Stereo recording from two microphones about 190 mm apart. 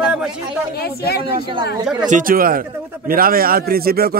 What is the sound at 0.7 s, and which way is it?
Speech, 55° left (ahead or behind).